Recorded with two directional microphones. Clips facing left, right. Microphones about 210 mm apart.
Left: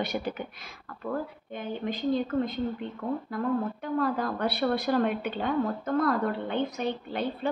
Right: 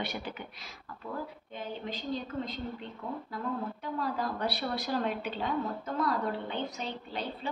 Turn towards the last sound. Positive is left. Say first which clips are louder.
# left 6 dB
turn(degrees=55)  # may be behind; listen again after turning